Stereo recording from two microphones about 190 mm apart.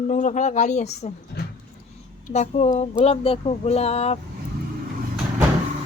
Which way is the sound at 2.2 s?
35° left (ahead or behind).